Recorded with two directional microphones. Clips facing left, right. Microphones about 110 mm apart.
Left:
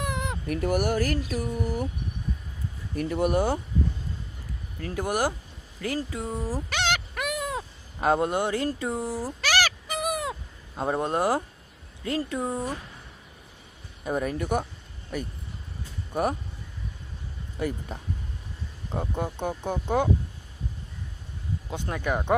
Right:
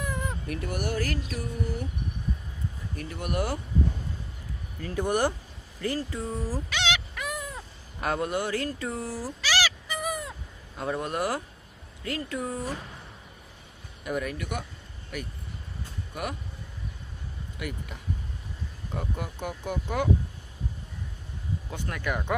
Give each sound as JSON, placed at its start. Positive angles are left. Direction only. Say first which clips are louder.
{"t": 0.0, "sound": "baby cry", "louder": "left 2 dB", "side_deg": 75}
{"t": 0.6, "sound": "a sound", "louder": "left 6 dB", "side_deg": 45}
{"t": 3.0, "sound": "speech", "louder": "left 7 dB", "side_deg": 45}
{"t": 4.8, "sound": "speech", "louder": "right 1 dB", "side_deg": 5}
{"t": 6.7, "sound": "a sound", "louder": "left 2 dB", "side_deg": 50}
{"t": 7.3, "sound": "a sound", "louder": "left 6 dB", "side_deg": 75}
{"t": 8.0, "sound": "speech", "louder": "left 5 dB", "side_deg": 25}
{"t": 9.4, "sound": "a sound", "louder": "left 2 dB", "side_deg": 50}
{"t": 10.0, "sound": "owl", "louder": "left 4 dB", "side_deg": 80}
{"t": 10.8, "sound": "speech", "louder": "left 4 dB", "side_deg": 30}
{"t": 14.0, "sound": "speech", "louder": "left 3 dB", "side_deg": 35}
{"t": 17.6, "sound": "speech", "louder": "left 7 dB", "side_deg": 35}
{"t": 21.7, "sound": "speech", "louder": "left 4 dB", "side_deg": 20}